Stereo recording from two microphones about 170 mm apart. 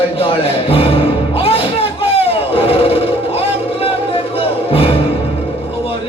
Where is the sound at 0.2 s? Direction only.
35° left (ahead or behind).